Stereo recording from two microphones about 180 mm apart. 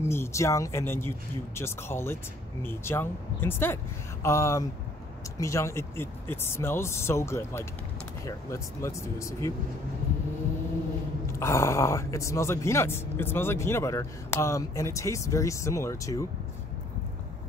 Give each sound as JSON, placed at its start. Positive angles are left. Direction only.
{"t": 0.0, "sound": "speech", "side_deg": 15}
{"t": 11.3, "sound": "speech", "side_deg": 15}